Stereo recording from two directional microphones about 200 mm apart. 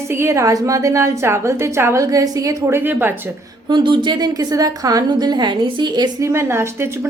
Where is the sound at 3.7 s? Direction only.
25° right (ahead or behind).